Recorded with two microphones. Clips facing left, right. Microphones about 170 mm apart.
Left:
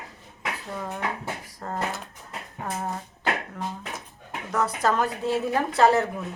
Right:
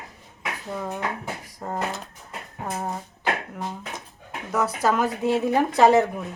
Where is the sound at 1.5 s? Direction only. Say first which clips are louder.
Right 3 dB; 15° right (ahead or behind).